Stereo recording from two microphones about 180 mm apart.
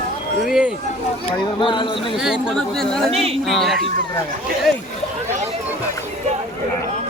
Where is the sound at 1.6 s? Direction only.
25° left (ahead or behind).